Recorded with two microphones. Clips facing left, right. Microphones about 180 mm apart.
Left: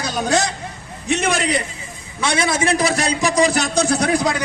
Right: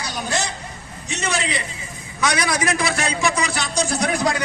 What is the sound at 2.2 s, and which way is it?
Speech, 25° left (ahead or behind).